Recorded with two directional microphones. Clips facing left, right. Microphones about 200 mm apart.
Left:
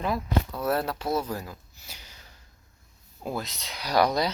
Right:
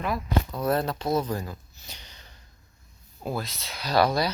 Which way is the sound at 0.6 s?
5° left (ahead or behind).